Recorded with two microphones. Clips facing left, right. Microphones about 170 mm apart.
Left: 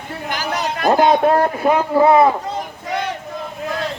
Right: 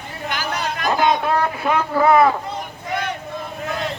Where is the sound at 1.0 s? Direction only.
40° left (ahead or behind).